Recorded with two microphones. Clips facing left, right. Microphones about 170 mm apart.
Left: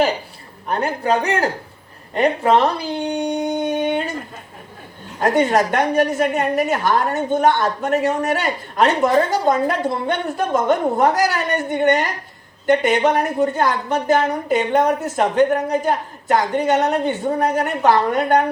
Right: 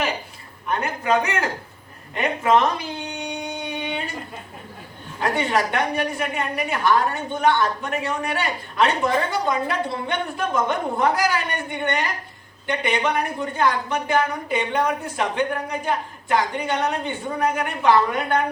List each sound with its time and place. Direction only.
0.7 s speech: 35° left (ahead or behind)
3.5 s a sound: 45° left (ahead or behind)
5.2 s a woman's voice: 45° left (ahead or behind)